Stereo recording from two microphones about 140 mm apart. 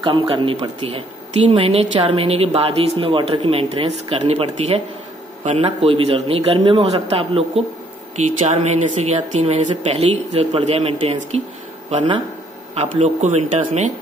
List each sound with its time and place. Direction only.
0.3 s speech: 45° right (ahead or behind)
9.7 s speech: 45° right (ahead or behind)
12.7 s speech: 50° right (ahead or behind)